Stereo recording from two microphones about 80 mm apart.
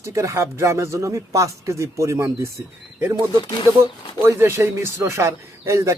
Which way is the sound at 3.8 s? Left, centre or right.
Right.